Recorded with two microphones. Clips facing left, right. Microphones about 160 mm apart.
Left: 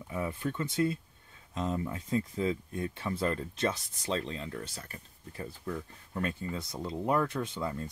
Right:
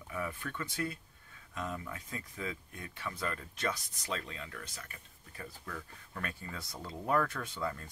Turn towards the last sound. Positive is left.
turn(degrees=20)  # may be behind; listen again after turning